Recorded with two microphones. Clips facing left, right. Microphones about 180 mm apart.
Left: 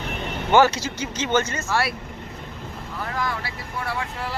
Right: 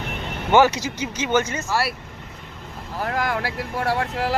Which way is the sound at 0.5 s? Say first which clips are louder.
Right 1 dB; 15° right (ahead or behind).